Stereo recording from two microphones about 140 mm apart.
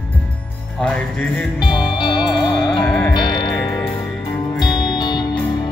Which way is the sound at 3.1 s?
35° left (ahead or behind).